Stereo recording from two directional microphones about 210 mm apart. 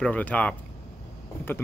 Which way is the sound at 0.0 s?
5° left (ahead or behind).